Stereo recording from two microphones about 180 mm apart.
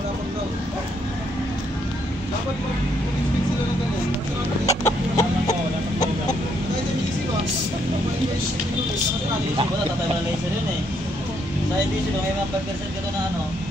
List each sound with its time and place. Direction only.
4.6 s chicken: 20° left (ahead or behind)